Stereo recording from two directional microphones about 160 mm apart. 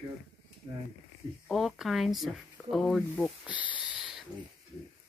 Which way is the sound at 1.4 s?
Centre (ahead or behind).